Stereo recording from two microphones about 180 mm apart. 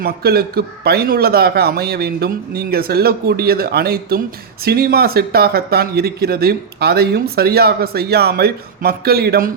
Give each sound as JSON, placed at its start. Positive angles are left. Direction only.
{"t": 0.0, "sound": "speech", "side_deg": -60}